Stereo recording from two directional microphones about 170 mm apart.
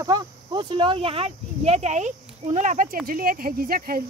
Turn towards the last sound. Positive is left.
turn(degrees=-60)  # may be behind; listen again after turning